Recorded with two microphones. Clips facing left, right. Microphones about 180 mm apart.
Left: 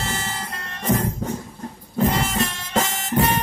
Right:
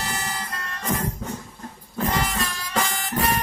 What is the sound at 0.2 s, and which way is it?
Vehicle, 25° left (ahead or behind).